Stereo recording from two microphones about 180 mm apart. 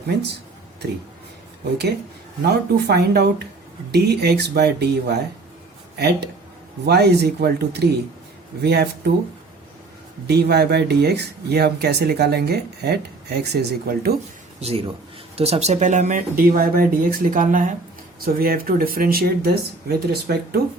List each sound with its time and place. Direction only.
2.4 s speech: 65° right (ahead or behind)
10.2 s speech: 65° right (ahead or behind)
14.6 s speech: 35° right (ahead or behind); by 20.6 s 55° right (ahead or behind)